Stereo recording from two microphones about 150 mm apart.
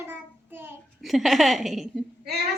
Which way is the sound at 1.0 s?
Centre (ahead or behind).